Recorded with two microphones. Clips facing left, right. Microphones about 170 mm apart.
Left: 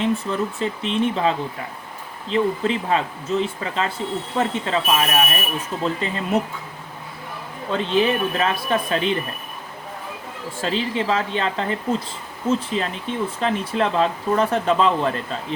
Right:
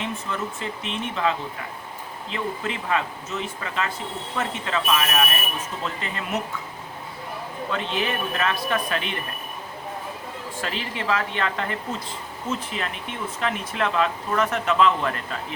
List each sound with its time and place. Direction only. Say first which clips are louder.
0.0 s speech: left 7 dB; 35° left (ahead or behind)
7.7 s speech: left 8 dB; 30° left (ahead or behind)
10.6 s speech: left 8 dB; 30° left (ahead or behind)